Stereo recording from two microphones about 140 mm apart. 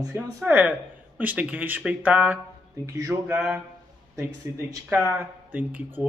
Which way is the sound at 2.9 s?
25° right (ahead or behind).